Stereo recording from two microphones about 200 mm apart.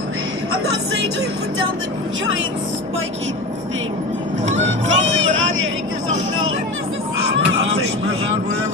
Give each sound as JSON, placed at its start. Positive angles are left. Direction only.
{"t": 4.6, "sound": "speech", "side_deg": -70}